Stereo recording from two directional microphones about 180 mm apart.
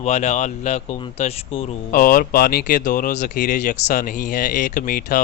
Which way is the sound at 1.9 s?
50° left (ahead or behind).